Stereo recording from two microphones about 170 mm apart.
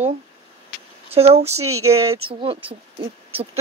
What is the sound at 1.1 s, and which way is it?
Speech, 35° right (ahead or behind).